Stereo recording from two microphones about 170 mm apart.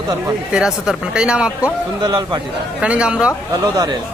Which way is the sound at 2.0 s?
25° right (ahead or behind).